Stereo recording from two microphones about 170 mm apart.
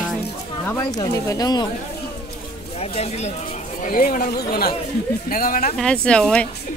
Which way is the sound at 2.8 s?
40° left (ahead or behind).